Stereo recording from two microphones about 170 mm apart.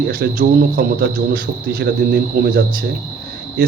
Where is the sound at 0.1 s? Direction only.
60° right (ahead or behind).